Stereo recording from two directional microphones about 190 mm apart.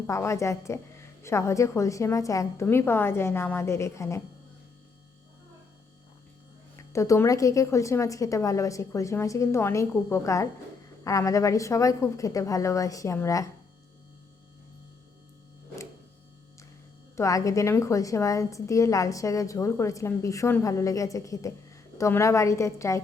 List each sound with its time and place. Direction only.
0.1 s a woman's voice: 15° left (ahead or behind)
6.9 s a woman's voice: 15° left (ahead or behind)
17.2 s a woman's voice: 15° left (ahead or behind)